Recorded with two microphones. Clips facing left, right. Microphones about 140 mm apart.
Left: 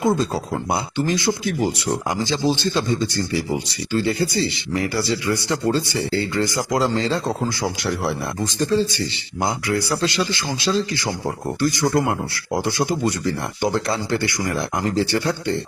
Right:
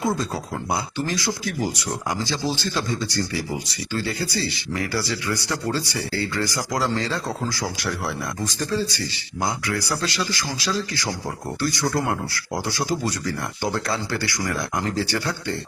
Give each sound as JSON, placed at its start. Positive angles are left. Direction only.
{"t": 0.0, "sound": "speech", "side_deg": 25}